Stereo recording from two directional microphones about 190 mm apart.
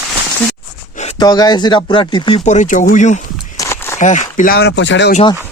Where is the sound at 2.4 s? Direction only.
40° left (ahead or behind).